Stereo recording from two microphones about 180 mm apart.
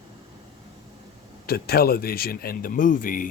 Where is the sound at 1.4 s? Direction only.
60° left (ahead or behind).